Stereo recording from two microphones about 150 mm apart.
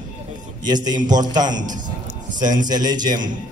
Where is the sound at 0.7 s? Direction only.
25° right (ahead or behind).